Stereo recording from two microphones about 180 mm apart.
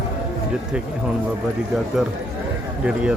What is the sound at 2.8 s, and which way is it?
Speech, 5° right (ahead or behind).